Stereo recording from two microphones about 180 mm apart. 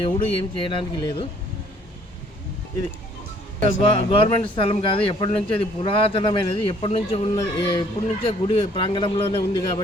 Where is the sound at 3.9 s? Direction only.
30° left (ahead or behind).